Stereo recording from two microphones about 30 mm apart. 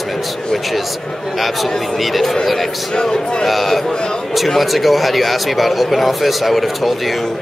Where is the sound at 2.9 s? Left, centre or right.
Left.